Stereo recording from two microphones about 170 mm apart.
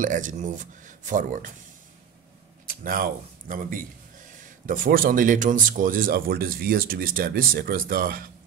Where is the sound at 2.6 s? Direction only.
55° right (ahead or behind).